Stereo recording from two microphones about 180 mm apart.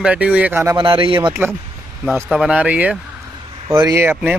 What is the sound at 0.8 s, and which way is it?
Speech, 30° right (ahead or behind).